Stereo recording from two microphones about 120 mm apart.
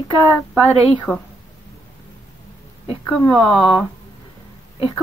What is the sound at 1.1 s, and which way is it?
Speech, 10° right (ahead or behind).